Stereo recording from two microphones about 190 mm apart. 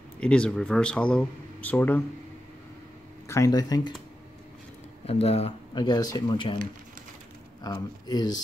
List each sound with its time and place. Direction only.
0.2 s speech: 5° left (ahead or behind)
3.3 s speech: 15° left (ahead or behind)
5.0 s speech: 30° left (ahead or behind)
7.6 s speech: 20° left (ahead or behind)